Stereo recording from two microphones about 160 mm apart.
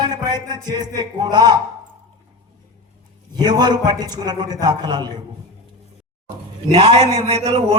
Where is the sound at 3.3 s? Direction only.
25° right (ahead or behind).